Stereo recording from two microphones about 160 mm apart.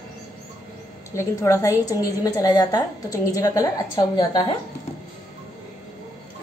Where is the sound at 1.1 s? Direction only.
15° left (ahead or behind).